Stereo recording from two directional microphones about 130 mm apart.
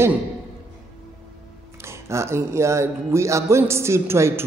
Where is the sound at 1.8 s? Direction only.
20° right (ahead or behind).